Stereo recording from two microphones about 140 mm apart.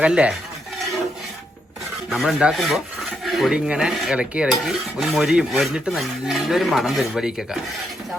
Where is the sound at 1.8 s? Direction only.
Centre (ahead or behind).